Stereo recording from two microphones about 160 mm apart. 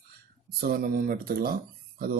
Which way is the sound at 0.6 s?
70° right (ahead or behind).